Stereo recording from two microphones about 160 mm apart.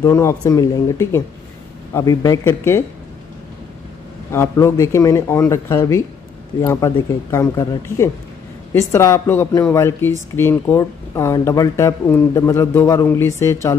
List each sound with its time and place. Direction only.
0.0 s speech: 20° left (ahead or behind)
4.3 s speech: 15° left (ahead or behind)